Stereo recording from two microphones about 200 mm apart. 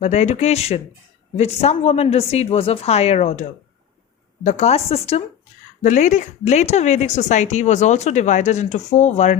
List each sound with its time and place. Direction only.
0.0 s speech: 35° left (ahead or behind)
4.4 s speech: 35° left (ahead or behind)